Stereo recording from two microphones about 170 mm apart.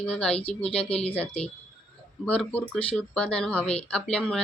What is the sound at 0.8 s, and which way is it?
Speech, 35° left (ahead or behind).